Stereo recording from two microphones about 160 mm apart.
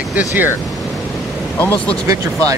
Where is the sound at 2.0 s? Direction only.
20° right (ahead or behind).